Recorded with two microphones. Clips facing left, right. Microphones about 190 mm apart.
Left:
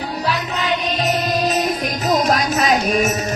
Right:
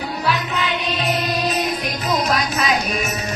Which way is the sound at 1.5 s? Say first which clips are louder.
Left 3 dB; 40° left (ahead or behind).